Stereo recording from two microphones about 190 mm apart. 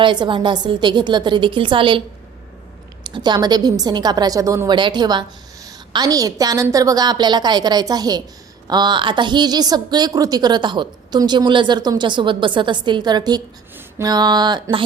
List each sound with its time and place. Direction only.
0.0 s a woman's voice: 25° right (ahead or behind)
3.0 s a woman's voice: 20° right (ahead or behind)
13.7 s a sound: 20° right (ahead or behind)